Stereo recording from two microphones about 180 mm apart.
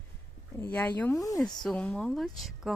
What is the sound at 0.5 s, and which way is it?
Speech, 10° left (ahead or behind).